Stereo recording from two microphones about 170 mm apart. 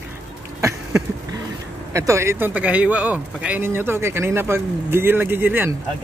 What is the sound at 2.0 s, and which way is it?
Speech, 15° right (ahead or behind).